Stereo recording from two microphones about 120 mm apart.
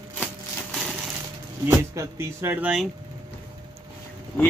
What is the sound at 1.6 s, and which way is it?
Speech, 20° right (ahead or behind).